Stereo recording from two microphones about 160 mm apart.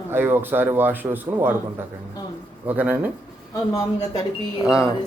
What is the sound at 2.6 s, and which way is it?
Speech, 10° right (ahead or behind).